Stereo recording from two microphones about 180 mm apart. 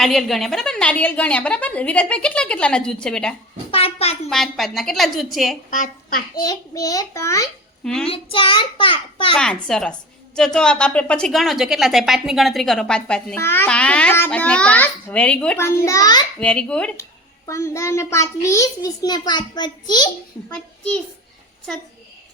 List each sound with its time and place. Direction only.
0.0 s a woman's voice: centre (ahead or behind)
3.7 s a child's voice: 35° left (ahead or behind)
4.3 s a woman's voice: centre (ahead or behind)
5.7 s a child's voice: 50° left (ahead or behind)
6.4 s a child's voice: 20° left (ahead or behind)
7.9 s a woman's voice: 5° left (ahead or behind)
8.1 s a child's voice: 30° left (ahead or behind)
9.4 s a woman's voice: 5° left (ahead or behind); by 16.2 s 20° left (ahead or behind)
16.4 s a woman's voice: 5° left (ahead or behind)
17.0 s a child's voice: 15° left (ahead or behind)
20.5 s a woman's voice: 5° left (ahead or behind)